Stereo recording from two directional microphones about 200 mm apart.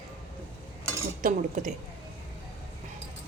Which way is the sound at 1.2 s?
40° right (ahead or behind).